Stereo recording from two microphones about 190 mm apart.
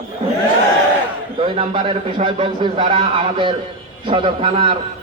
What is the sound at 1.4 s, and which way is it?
A man's voice, 25° right (ahead or behind).